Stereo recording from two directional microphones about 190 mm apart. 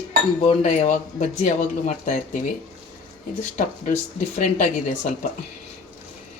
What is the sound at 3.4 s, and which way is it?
Speech, 40° left (ahead or behind).